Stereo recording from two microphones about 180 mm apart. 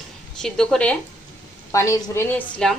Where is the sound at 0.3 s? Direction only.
Centre (ahead or behind).